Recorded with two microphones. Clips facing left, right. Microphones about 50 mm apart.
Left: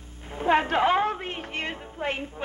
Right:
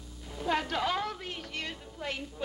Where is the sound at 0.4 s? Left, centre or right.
Left.